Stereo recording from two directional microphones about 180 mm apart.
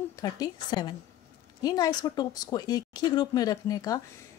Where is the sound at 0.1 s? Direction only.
20° left (ahead or behind).